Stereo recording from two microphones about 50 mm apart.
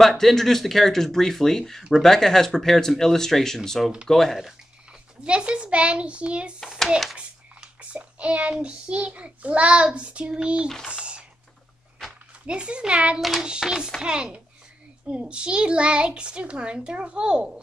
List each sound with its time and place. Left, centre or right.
0.0 s speech: centre
5.2 s a child's voice: right
10.9 s a sound: right
12.4 s a child's voice: right
13.4 s child singing: centre
14.0 s a child's voice: centre